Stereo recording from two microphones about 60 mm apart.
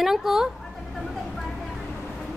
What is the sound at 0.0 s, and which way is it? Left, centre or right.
Speech, centre.